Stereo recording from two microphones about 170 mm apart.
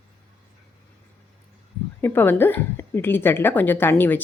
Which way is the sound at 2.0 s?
10° left (ahead or behind).